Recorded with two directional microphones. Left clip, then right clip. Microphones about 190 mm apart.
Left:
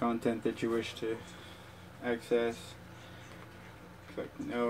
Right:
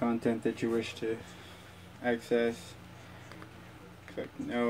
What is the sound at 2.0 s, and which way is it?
Speech, 30° right (ahead or behind).